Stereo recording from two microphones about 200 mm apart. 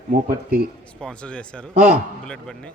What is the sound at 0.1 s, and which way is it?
Speech, 50° right (ahead or behind).